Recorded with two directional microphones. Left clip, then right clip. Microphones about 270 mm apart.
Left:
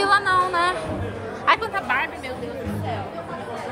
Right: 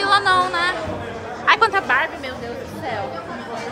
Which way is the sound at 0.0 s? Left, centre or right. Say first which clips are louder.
Right 2 dB; centre.